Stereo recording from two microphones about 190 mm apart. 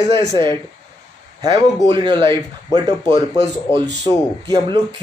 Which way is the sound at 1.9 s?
25° right (ahead or behind).